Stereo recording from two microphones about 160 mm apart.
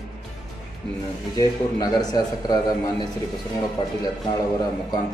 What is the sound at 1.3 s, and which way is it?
A man's voice, 25° left (ahead or behind).